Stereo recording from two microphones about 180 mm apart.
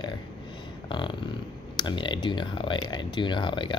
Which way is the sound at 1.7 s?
25° left (ahead or behind).